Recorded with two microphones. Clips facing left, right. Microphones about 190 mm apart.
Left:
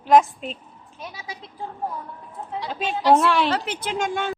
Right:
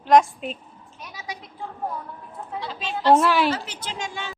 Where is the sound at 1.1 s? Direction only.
30° left (ahead or behind).